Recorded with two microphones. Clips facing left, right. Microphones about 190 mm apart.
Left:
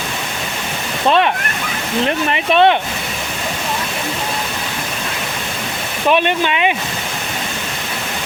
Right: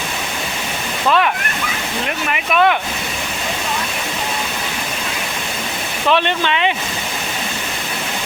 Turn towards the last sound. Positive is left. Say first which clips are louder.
# left 2 dB
turn(degrees=15)  # may be behind; listen again after turning